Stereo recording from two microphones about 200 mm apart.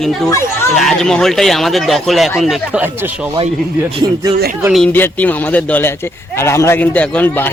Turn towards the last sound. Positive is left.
turn(degrees=10)  # may be behind; listen again after turning